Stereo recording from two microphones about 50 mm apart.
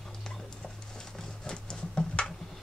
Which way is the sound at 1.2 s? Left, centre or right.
Centre.